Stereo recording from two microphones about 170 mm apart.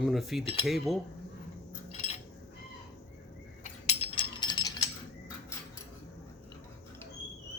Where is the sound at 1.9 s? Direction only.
40° left (ahead or behind).